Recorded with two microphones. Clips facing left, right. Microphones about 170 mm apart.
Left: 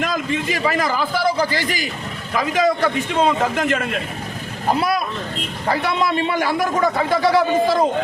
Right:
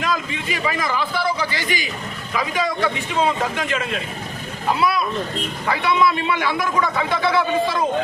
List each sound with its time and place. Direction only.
0.0 s a man's voice: 45° left (ahead or behind)